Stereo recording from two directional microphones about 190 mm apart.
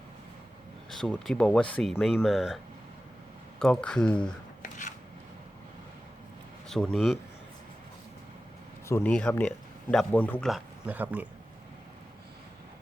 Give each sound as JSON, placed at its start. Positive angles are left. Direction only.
{"t": 0.9, "sound": "speech", "side_deg": 5}
{"t": 3.6, "sound": "speech", "side_deg": 5}
{"t": 4.6, "sound": "chopping", "side_deg": 40}
{"t": 6.7, "sound": "speech", "side_deg": 5}
{"t": 8.9, "sound": "speech", "side_deg": 10}
{"t": 10.5, "sound": "speech", "side_deg": -10}